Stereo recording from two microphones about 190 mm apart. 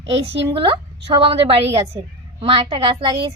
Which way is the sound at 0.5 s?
25° right (ahead or behind).